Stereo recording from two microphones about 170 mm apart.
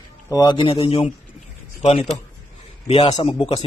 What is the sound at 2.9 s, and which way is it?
Speech, 35° left (ahead or behind).